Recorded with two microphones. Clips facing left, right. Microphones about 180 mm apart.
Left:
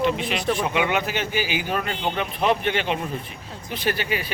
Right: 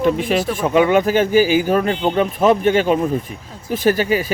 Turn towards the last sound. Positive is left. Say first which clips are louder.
# right 9 dB
turn(degrees=-40)  # may be behind; listen again after turning